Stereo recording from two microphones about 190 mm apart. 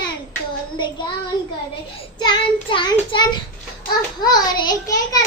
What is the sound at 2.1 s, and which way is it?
A child's voice, 25° left (ahead or behind).